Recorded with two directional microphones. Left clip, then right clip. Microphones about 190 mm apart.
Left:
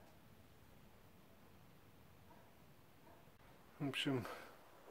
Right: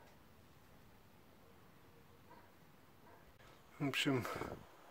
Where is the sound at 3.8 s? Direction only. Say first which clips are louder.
Right 4 dB; 20° right (ahead or behind).